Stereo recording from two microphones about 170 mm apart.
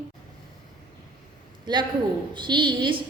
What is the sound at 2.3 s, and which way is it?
Speech, 25° right (ahead or behind).